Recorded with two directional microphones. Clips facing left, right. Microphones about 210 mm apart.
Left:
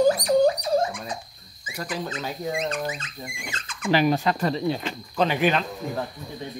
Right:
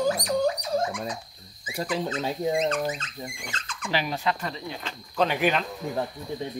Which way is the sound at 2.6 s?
10° left (ahead or behind).